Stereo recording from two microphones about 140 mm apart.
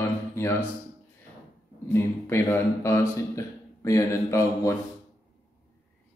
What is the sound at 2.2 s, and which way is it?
A man's voice, 20° left (ahead or behind).